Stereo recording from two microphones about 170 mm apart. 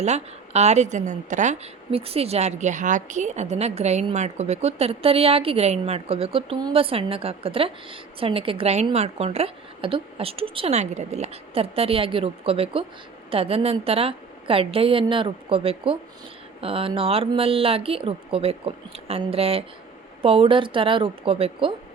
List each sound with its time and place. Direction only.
0.0 s a woman's voice: 40° right (ahead or behind)